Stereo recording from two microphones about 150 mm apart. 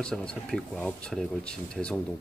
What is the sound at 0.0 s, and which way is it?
Speech, 5° left (ahead or behind).